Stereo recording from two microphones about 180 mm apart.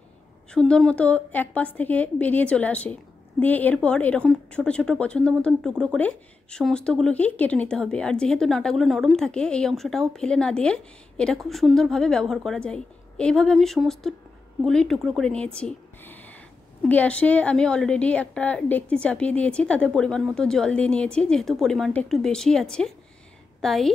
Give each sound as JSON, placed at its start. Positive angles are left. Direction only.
{"t": 0.5, "sound": "a woman's voice", "side_deg": 5}